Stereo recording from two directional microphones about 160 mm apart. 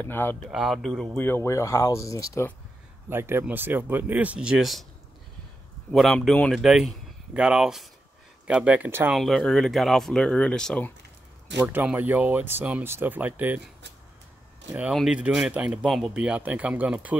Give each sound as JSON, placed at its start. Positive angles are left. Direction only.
{"t": 0.1, "sound": "speech", "side_deg": 15}
{"t": 0.5, "sound": "speech", "side_deg": 0}
{"t": 1.2, "sound": "speech", "side_deg": 15}
{"t": 3.1, "sound": "speech", "side_deg": -15}
{"t": 5.9, "sound": "speech", "side_deg": 0}
{"t": 9.1, "sound": "speech", "side_deg": 0}
{"t": 11.6, "sound": "speech", "side_deg": -10}
{"t": 14.8, "sound": "speech", "side_deg": -5}